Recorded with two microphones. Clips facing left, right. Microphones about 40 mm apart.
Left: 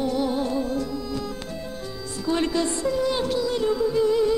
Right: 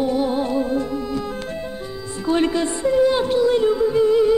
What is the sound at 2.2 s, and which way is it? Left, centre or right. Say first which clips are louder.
A woman's voice: right 4 dB; right.